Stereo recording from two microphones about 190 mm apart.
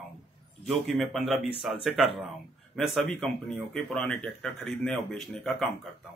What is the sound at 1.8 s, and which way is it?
Speech, centre (ahead or behind).